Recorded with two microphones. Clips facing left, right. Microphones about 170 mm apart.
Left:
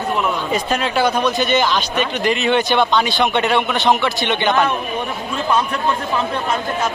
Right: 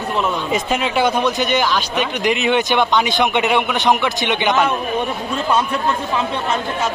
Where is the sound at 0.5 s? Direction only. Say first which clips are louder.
Even; 20° right (ahead or behind).